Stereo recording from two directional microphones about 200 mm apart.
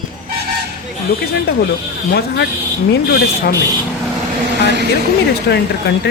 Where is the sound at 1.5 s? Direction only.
50° left (ahead or behind).